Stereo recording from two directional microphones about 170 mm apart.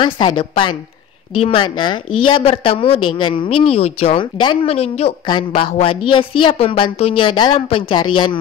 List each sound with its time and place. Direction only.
0.0 s a woman's voice: 30° left (ahead or behind)